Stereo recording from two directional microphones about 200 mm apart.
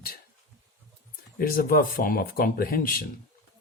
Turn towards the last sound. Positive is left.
turn(degrees=45)  # may be behind; listen again after turning